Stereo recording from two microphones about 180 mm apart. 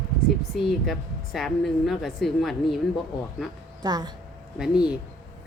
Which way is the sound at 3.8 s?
25° right (ahead or behind).